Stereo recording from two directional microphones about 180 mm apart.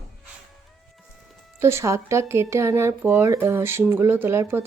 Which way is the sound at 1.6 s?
15° right (ahead or behind).